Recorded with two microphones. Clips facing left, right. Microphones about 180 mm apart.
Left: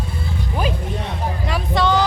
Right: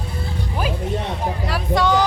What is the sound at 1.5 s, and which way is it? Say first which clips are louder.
Speech: even; 10° right (ahead or behind).